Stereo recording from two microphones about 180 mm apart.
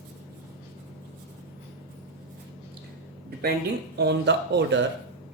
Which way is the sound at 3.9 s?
70° right (ahead or behind).